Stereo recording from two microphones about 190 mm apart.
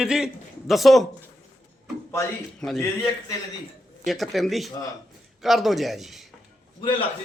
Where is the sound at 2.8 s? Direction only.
15° left (ahead or behind).